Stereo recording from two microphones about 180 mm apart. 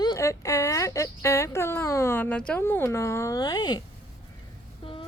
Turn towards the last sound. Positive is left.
turn(degrees=30)  # may be behind; listen again after turning